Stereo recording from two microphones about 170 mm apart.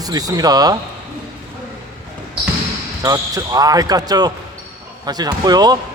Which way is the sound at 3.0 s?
20° right (ahead or behind).